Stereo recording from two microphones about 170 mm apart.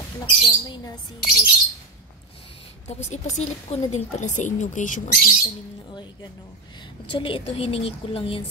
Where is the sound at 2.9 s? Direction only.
40° left (ahead or behind).